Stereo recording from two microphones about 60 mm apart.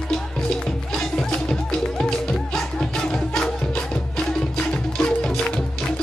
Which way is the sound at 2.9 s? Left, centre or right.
Centre.